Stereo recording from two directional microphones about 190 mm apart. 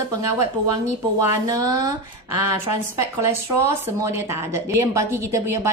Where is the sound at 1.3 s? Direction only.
15° right (ahead or behind).